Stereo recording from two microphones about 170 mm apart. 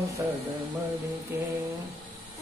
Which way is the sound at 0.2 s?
15° right (ahead or behind).